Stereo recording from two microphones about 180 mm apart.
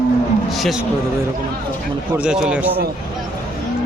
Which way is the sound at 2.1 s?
5° right (ahead or behind).